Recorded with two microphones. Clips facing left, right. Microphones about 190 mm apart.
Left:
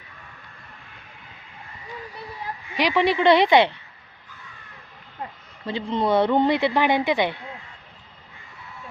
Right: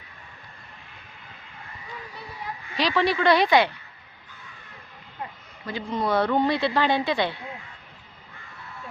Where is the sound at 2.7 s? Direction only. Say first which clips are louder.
Left 3 dB; 20° left (ahead or behind).